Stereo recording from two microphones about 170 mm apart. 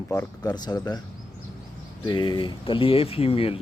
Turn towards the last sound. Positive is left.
turn(degrees=35)  # may be behind; listen again after turning